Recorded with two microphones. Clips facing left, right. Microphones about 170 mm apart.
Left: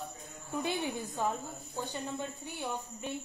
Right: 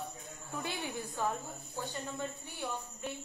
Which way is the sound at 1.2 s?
20° left (ahead or behind).